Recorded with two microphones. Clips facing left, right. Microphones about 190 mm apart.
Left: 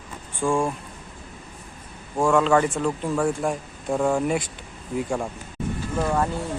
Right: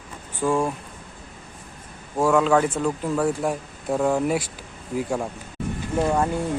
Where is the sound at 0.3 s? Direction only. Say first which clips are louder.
Right 1 dB; 5° right (ahead or behind).